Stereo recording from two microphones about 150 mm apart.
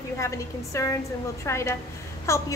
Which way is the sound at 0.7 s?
20° left (ahead or behind).